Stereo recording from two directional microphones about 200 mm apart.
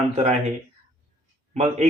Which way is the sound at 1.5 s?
35° right (ahead or behind).